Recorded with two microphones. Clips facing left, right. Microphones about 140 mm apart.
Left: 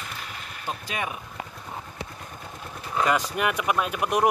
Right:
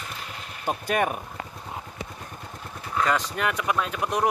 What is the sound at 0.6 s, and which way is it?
Speech, 55° right (ahead or behind).